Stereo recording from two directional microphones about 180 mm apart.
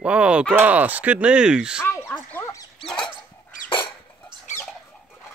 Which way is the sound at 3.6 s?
25° left (ahead or behind).